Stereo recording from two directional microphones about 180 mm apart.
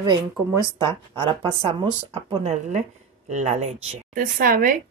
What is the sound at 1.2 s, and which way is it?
Speech, 30° right (ahead or behind).